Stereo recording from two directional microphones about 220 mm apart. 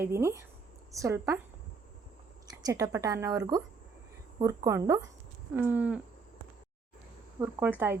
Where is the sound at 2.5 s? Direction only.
15° right (ahead or behind).